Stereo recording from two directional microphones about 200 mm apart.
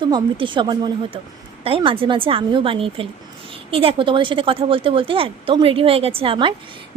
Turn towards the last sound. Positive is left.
turn(degrees=-25)  # may be behind; listen again after turning